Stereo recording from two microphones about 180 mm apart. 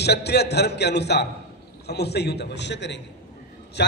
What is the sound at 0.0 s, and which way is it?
A man's voice, 65° left (ahead or behind).